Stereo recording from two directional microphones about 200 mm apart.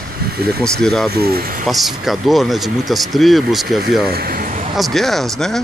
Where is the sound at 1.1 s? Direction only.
50° right (ahead or behind).